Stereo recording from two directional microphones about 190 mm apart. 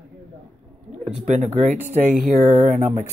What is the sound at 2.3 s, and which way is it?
Speech, 40° right (ahead or behind).